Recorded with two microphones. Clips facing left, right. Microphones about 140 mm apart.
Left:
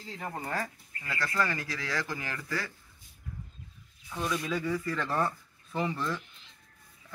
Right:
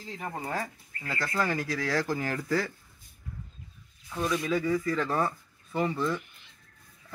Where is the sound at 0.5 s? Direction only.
25° right (ahead or behind).